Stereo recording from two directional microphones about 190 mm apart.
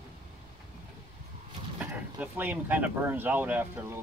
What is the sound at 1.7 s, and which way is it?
Speech, 10° right (ahead or behind).